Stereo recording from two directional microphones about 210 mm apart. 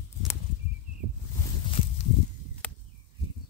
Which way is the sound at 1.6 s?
25° left (ahead or behind).